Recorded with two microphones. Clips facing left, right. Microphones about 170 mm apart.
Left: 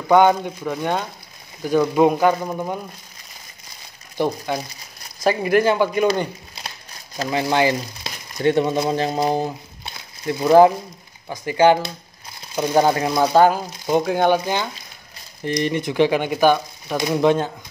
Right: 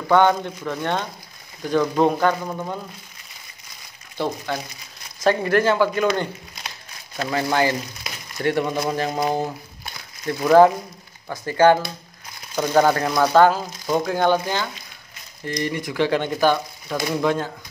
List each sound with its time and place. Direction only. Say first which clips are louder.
0.1 s speech: left 2 dB; 15° left (ahead or behind)
4.2 s speech: left 3 dB; 15° left (ahead or behind)
7.2 s speech: left 2 dB; 15° left (ahead or behind)